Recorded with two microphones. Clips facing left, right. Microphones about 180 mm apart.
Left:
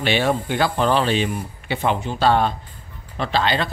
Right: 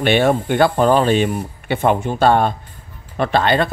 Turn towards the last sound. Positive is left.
turn(degrees=-55)  # may be behind; listen again after turning